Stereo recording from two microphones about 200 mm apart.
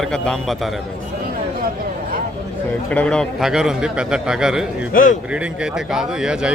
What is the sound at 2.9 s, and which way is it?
A man's voice, 5° left (ahead or behind).